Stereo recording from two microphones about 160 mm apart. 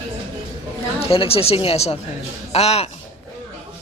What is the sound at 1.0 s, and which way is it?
Speech, 35° left (ahead or behind).